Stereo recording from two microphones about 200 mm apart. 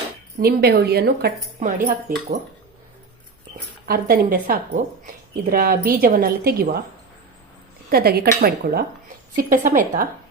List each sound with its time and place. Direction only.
0.3 s a woman's voice: 50° right (ahead or behind)
3.8 s a woman's voice: 50° right (ahead or behind)
7.9 s a woman's voice: 50° right (ahead or behind)